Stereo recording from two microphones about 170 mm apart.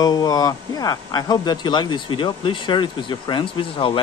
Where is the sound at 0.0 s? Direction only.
20° left (ahead or behind).